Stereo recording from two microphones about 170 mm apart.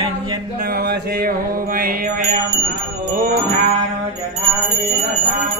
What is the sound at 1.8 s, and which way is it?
Mantra, 60° right (ahead or behind).